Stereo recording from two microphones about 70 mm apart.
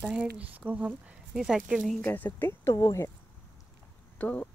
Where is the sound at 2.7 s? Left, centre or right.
Left.